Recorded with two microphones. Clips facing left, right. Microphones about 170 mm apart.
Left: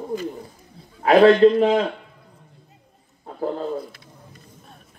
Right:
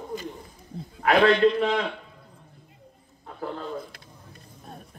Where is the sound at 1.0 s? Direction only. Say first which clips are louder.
Left 6 dB; 35° left (ahead or behind).